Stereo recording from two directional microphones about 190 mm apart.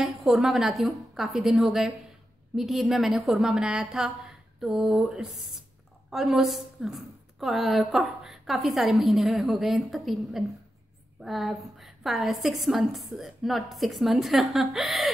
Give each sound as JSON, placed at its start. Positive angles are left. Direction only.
{"t": 0.0, "sound": "a woman's voice", "side_deg": 0}